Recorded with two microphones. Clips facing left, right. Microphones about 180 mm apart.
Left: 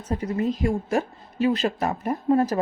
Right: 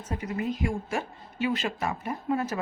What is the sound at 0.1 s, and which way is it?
A woman's voice, 35° left (ahead or behind).